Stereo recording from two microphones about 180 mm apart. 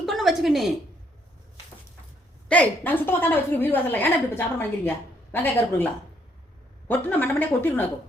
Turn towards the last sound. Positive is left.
turn(degrees=10)  # may be behind; listen again after turning